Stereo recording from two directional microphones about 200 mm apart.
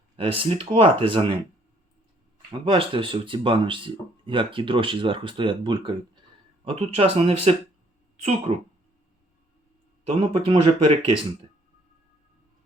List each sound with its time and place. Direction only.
0.2 s speech: 25° right (ahead or behind)
2.6 s speech: 25° right (ahead or behind)
10.1 s speech: 30° right (ahead or behind)